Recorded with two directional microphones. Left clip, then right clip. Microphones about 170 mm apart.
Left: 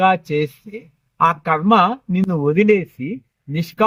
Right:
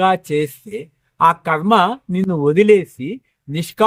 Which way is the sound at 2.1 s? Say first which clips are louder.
Right 2 dB; 5° right (ahead or behind).